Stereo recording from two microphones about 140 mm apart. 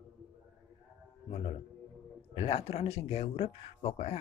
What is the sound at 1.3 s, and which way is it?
Speech, 45° left (ahead or behind).